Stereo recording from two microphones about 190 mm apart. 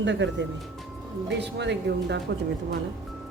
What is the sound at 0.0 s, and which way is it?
A man's voice, 70° right (ahead or behind).